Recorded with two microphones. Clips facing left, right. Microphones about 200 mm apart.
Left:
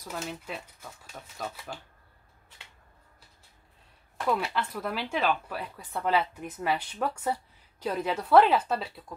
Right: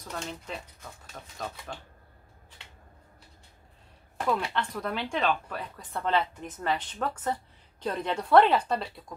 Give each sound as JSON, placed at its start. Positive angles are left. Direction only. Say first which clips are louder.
{"t": 0.0, "sound": "speech", "louder": "left 1 dB", "side_deg": 5}
{"t": 4.3, "sound": "speech", "louder": "even", "side_deg": 5}